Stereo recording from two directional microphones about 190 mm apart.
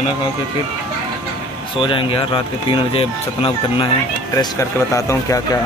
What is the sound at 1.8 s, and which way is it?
Speech, 25° left (ahead or behind).